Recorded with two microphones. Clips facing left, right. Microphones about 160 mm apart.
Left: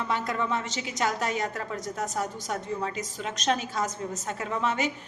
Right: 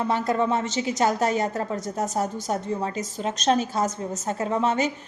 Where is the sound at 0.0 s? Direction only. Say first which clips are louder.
Right 6 dB; 35° right (ahead or behind).